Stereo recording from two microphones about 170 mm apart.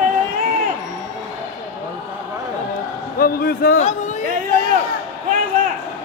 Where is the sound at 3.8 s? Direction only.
45° left (ahead or behind).